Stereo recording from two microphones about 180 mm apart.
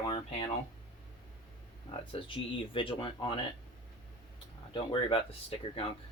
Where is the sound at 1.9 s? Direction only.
30° left (ahead or behind).